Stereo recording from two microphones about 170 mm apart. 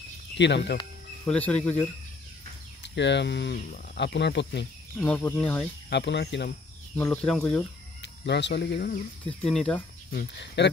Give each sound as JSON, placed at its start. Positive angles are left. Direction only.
{"t": 0.4, "sound": "speech", "side_deg": 90}
{"t": 1.2, "sound": "speech", "side_deg": 10}
{"t": 2.8, "sound": "speech", "side_deg": 90}
{"t": 4.9, "sound": "speech", "side_deg": 10}
{"t": 5.9, "sound": "speech", "side_deg": 90}
{"t": 7.1, "sound": "speech", "side_deg": 5}
{"t": 8.0, "sound": "speech", "side_deg": 90}
{"t": 9.3, "sound": "speech", "side_deg": 5}
{"t": 10.1, "sound": "speech", "side_deg": 85}